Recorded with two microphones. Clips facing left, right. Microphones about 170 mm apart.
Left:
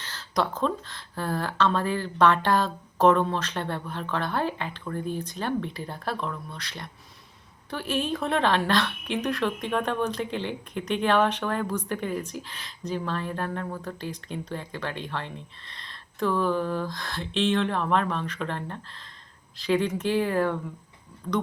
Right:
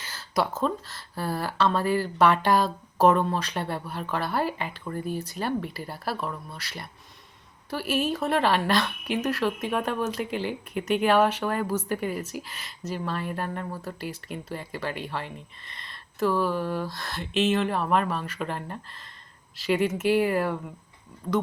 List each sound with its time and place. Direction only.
0.0 s a woman's voice: 10° right (ahead or behind)
21.2 s speech: 20° right (ahead or behind)